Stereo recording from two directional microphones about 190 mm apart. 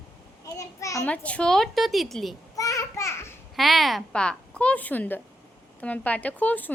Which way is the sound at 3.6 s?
Centre (ahead or behind).